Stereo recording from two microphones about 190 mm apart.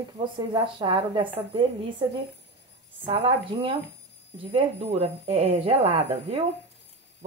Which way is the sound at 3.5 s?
25° right (ahead or behind).